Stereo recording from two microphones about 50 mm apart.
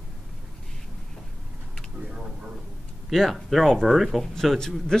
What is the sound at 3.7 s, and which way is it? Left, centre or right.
Speech, centre.